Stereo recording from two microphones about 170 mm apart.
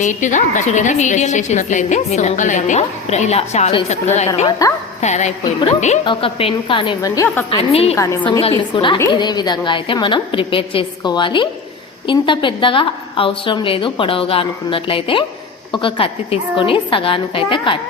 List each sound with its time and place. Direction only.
0.0 s a woman's voice: 45° left (ahead or behind)
4.6 s a woman's voice: 20° left (ahead or behind)
4.9 s speech: 40° left (ahead or behind)
6.1 s a woman's voice: 30° left (ahead or behind)
7.7 s a woman's voice: 35° left (ahead or behind)
7.9 s a woman's voice: 20° left (ahead or behind)